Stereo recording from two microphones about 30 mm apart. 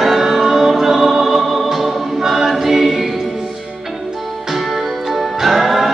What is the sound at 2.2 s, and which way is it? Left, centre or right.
Choir, centre.